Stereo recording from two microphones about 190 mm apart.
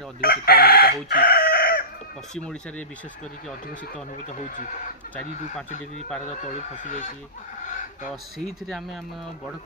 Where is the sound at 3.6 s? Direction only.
45° left (ahead or behind).